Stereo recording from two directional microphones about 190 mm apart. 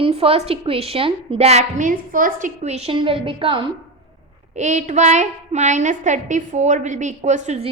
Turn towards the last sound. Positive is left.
turn(degrees=-40)  # may be behind; listen again after turning